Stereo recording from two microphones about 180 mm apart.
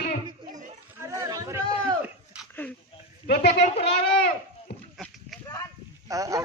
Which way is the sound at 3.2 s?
60° left (ahead or behind).